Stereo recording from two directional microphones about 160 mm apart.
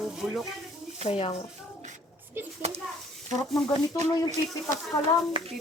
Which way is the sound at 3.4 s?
Centre (ahead or behind).